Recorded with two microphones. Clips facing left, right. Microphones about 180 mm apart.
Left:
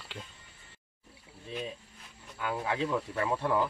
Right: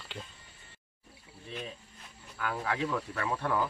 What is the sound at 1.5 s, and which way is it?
Speech, 15° left (ahead or behind).